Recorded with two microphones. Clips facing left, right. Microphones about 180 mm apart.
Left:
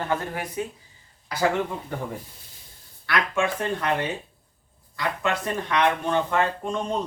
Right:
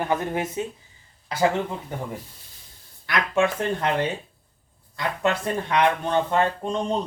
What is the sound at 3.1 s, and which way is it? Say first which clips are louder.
Speech: right 2 dB; 20° right (ahead or behind).